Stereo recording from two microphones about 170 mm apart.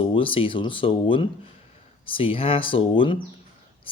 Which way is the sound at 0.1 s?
30° left (ahead or behind).